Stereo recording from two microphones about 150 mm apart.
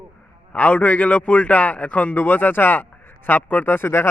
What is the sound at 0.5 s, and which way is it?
A man's voice, 10° left (ahead or behind).